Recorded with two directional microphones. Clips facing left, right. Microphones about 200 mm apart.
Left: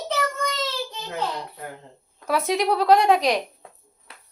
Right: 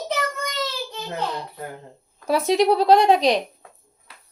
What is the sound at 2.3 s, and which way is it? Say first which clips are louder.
A woman's voice: right 4 dB; 30° right (ahead or behind).